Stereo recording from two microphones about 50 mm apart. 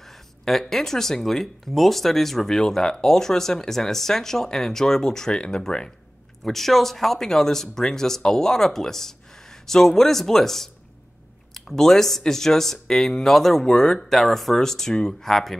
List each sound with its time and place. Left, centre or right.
0.0 s speech: centre
5.3 s speech: left
6.4 s speech: centre